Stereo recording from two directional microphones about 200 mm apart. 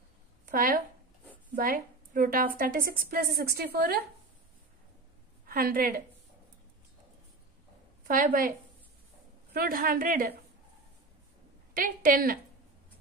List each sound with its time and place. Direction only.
0.5 s a woman's voice: 45° right (ahead or behind)
5.5 s a woman's voice: 45° right (ahead or behind)
8.1 s a woman's voice: 45° right (ahead or behind)
11.7 s a woman's voice: 45° right (ahead or behind)